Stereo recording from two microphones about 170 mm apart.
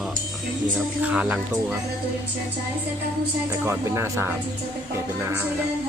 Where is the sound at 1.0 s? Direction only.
5° right (ahead or behind).